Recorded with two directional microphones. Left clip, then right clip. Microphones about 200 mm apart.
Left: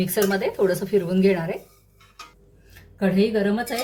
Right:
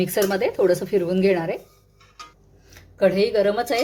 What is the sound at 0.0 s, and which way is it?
A woman's voice, 30° right (ahead or behind).